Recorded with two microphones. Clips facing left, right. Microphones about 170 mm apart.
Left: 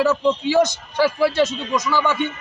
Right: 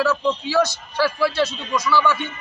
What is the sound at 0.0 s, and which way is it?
A man's voice, 20° left (ahead or behind).